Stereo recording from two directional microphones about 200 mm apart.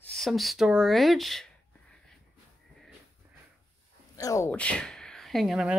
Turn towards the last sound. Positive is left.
turn(degrees=0)  # may be behind; listen again after turning